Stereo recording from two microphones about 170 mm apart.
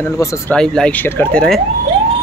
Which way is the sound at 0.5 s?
5° left (ahead or behind).